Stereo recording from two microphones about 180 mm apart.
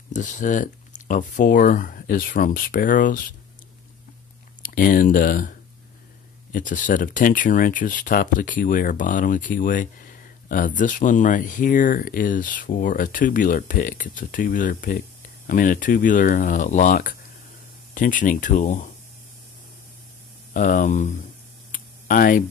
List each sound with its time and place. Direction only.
0.1 s speech: 45° left (ahead or behind)
4.6 s speech: 50° left (ahead or behind)
20.5 s speech: 45° left (ahead or behind)
21.7 s a sound: 50° left (ahead or behind)